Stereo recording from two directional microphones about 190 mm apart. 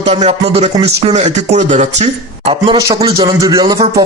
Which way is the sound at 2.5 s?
25° right (ahead or behind).